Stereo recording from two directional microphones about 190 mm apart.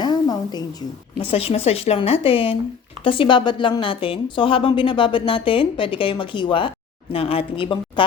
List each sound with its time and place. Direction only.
0.0 s a woman's voice: 20° left (ahead or behind)